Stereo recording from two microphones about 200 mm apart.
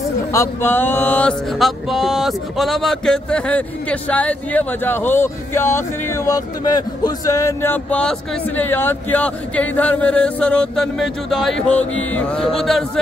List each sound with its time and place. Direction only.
0.0 s speech: 15° left (ahead or behind)